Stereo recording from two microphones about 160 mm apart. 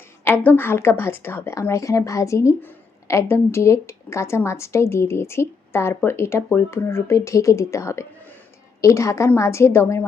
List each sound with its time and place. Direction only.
0.4 s speech: 15° left (ahead or behind)